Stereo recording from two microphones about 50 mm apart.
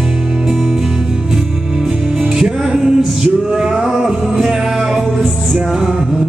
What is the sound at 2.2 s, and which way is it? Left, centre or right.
Music, centre.